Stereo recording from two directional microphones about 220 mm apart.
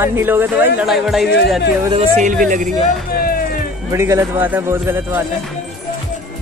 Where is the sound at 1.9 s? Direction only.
30° right (ahead or behind).